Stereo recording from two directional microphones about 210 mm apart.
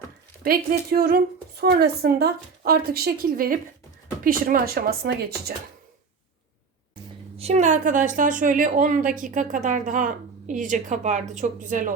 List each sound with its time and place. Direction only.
0.4 s a woman's voice: 45° right (ahead or behind)
7.3 s a woman's voice: 30° right (ahead or behind)